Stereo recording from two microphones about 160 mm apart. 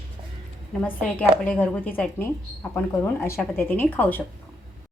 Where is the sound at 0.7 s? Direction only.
Centre (ahead or behind).